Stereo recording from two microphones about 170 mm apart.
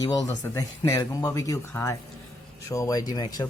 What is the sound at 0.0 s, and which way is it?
Speech, 20° left (ahead or behind).